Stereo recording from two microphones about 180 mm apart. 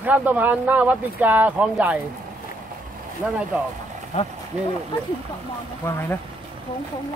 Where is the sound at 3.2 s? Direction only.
5° right (ahead or behind).